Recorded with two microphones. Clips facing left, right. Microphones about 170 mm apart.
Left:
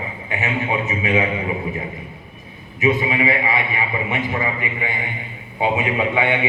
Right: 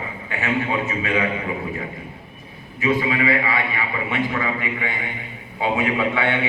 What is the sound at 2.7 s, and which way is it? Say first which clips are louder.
A man's voice: left 2 dB; 20° left (ahead or behind).